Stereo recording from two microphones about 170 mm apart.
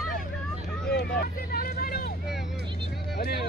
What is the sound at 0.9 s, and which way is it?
Vehicle, 65° left (ahead or behind).